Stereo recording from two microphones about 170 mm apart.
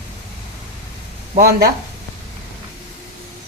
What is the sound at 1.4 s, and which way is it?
Speech, 65° right (ahead or behind).